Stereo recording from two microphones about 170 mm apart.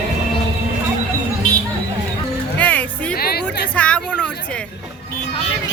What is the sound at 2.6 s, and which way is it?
Music, 10° left (ahead or behind).